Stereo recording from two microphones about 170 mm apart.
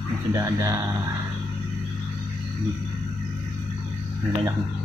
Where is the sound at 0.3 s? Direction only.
20° right (ahead or behind).